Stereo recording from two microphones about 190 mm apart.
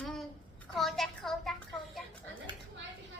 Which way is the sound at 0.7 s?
Centre (ahead or behind).